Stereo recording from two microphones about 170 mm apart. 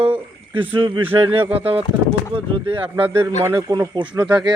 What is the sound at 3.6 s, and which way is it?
Speech, 25° right (ahead or behind).